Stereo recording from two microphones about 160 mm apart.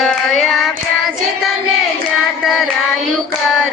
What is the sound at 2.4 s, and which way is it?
Music, centre (ahead or behind).